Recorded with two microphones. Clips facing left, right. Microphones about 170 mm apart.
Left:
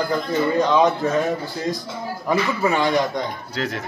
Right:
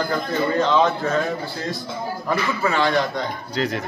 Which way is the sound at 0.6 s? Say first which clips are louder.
Left 1 dB; 15° left (ahead or behind).